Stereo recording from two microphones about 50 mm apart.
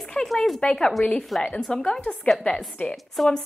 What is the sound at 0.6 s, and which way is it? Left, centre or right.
A woman's voice, centre.